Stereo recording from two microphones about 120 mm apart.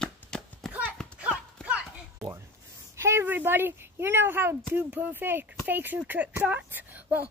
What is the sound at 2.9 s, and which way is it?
Speech, 20° right (ahead or behind).